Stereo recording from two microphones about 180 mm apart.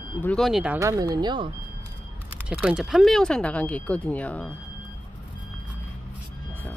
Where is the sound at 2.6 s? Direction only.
5° right (ahead or behind).